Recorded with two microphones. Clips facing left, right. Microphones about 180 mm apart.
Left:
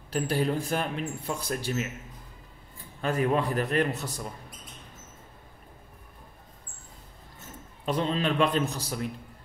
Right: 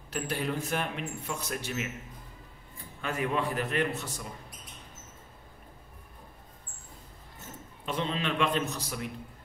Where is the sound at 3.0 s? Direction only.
35° left (ahead or behind).